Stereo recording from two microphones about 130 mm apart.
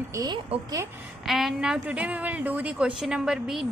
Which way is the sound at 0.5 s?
50° right (ahead or behind).